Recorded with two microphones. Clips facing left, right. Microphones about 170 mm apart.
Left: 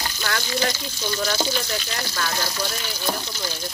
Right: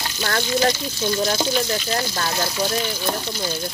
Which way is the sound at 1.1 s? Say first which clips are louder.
Right 3 dB; 25° right (ahead or behind).